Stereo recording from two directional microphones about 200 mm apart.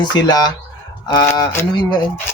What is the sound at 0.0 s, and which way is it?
Speech, 20° left (ahead or behind).